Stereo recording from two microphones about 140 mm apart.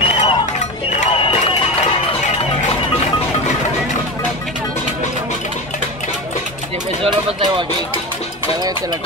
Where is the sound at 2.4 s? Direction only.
45° left (ahead or behind).